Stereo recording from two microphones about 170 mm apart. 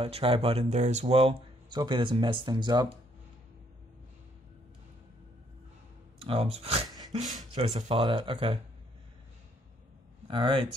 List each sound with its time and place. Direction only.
0.0 s speech: 35° right (ahead or behind)
6.1 s speech: 35° right (ahead or behind)
10.2 s speech: 30° right (ahead or behind)